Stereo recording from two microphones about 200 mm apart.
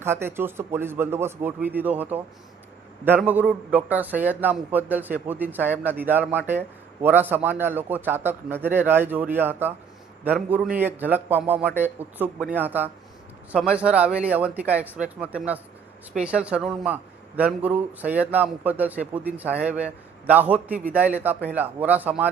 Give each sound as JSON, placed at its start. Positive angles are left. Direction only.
{"t": 0.0, "sound": "speech", "side_deg": -10}